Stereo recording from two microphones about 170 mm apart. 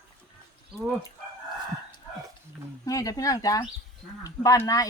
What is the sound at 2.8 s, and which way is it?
Speech, 20° left (ahead or behind).